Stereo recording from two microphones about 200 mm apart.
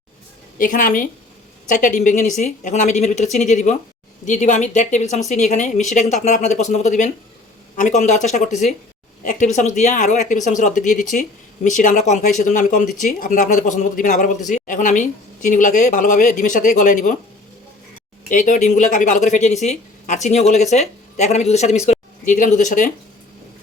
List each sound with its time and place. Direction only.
0.6 s a man's voice: 40° left (ahead or behind)
18.3 s a man's voice: 40° left (ahead or behind)